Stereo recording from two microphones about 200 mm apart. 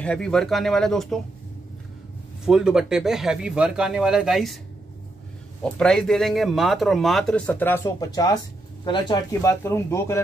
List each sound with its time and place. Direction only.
0.0 s speech: 5° left (ahead or behind)
2.4 s speech: centre (ahead or behind)
5.6 s speech: 5° left (ahead or behind)